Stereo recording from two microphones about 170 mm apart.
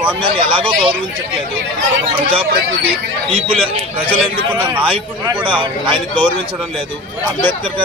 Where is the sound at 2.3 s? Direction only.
30° right (ahead or behind).